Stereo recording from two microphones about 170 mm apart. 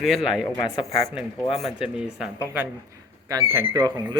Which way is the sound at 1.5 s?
Centre (ahead or behind).